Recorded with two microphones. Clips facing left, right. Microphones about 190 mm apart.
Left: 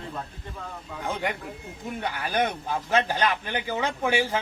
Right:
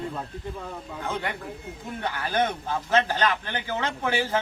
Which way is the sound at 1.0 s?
15° left (ahead or behind).